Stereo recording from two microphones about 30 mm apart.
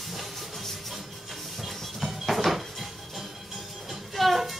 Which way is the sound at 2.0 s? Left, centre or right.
Centre.